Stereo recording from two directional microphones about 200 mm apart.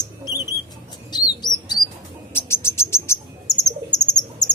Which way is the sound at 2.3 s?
10° left (ahead or behind).